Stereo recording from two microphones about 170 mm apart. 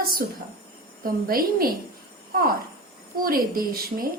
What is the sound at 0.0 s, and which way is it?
A woman's voice, 60° right (ahead or behind).